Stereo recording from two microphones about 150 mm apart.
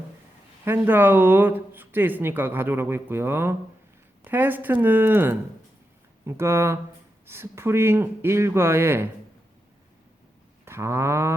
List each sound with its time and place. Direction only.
0.6 s speech: 15° right (ahead or behind)
10.7 s speech: 15° right (ahead or behind)